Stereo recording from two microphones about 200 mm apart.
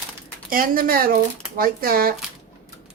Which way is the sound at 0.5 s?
45° right (ahead or behind).